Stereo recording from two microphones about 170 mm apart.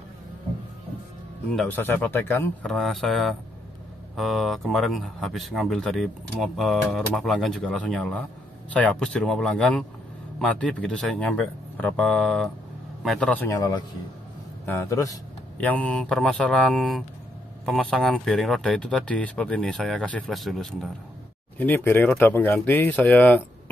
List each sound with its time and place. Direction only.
1.5 s speech: 10° left (ahead or behind)
2.6 s speech: centre (ahead or behind)
21.5 s speech: 10° left (ahead or behind)